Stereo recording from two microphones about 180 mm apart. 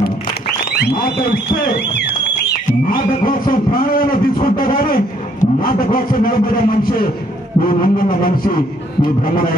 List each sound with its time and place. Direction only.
0.7 s a man's voice: 60° left (ahead or behind)
2.9 s a man's voice: 55° left (ahead or behind)